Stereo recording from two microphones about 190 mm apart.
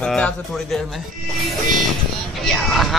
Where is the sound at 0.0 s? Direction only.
5° left (ahead or behind).